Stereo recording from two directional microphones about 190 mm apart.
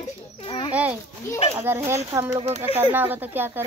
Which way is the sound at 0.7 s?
5° right (ahead or behind).